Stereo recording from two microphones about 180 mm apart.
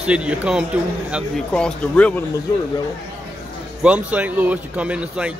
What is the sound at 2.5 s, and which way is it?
Speech, 20° left (ahead or behind).